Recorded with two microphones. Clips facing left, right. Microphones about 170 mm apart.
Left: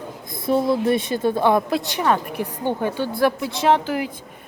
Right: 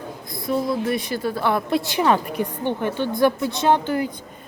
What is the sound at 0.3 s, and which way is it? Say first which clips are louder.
A woman's voice: left 3 dB; 25° left (ahead or behind).